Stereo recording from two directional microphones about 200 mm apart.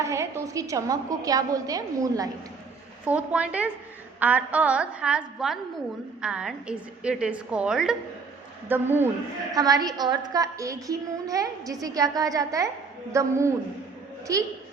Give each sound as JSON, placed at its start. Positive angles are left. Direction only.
{"t": 0.0, "sound": "a woman's voice", "side_deg": -15}
{"t": 3.0, "sound": "a woman's voice", "side_deg": -5}